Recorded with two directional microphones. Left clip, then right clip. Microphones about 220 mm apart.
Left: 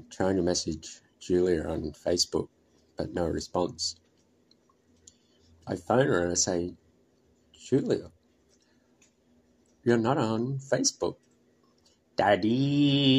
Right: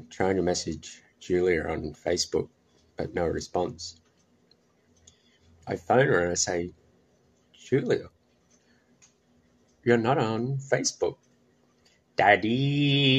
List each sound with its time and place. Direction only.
0.1 s speech: 10° left (ahead or behind)
5.6 s speech: 15° left (ahead or behind)
9.8 s speech: 15° left (ahead or behind)
12.4 s speech: 15° left (ahead or behind)